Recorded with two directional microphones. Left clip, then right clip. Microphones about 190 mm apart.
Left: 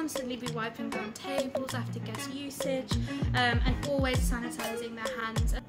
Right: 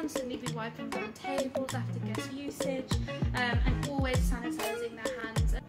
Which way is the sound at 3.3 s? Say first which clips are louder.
Left 4 dB; 40° left (ahead or behind).